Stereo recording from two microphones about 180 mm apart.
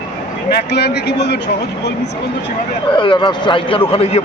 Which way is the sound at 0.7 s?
65° left (ahead or behind).